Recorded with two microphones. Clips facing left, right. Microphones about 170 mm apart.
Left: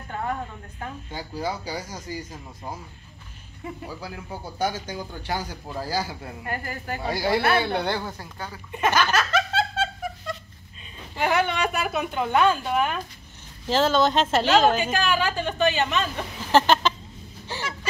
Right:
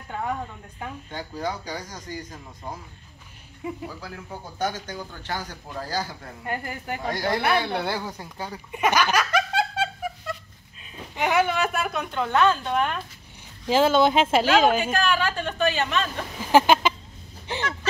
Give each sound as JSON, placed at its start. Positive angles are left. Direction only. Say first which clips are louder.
{"t": 0.1, "sound": "a woman's voice", "louder": "even", "side_deg": -5}
{"t": 1.1, "sound": "a man's voice", "louder": "left 1 dB", "side_deg": 10}
{"t": 3.6, "sound": "speech", "louder": "right 3 dB", "side_deg": -10}
{"t": 4.0, "sound": "a man's voice", "louder": "left 2 dB", "side_deg": 10}
{"t": 6.4, "sound": "a woman's voice", "louder": "right 2 dB", "side_deg": -20}
{"t": 7.0, "sound": "a man's voice", "louder": "left 2 dB", "side_deg": 5}
{"t": 8.2, "sound": "giggle", "louder": "right 2 dB", "side_deg": -15}
{"t": 10.8, "sound": "a woman's voice", "louder": "even", "side_deg": -5}
{"t": 13.7, "sound": "a woman's voice", "louder": "right 2 dB", "side_deg": -10}
{"t": 16.5, "sound": "a sound", "louder": "right 1 dB", "side_deg": -10}